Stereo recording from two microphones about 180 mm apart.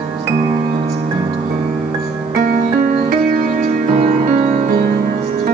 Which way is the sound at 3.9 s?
40° right (ahead or behind).